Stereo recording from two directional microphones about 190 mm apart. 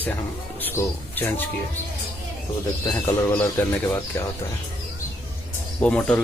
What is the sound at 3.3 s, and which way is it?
Speech, 10° left (ahead or behind).